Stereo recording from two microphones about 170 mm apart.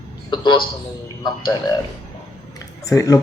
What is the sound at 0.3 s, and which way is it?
A man's voice, 30° left (ahead or behind).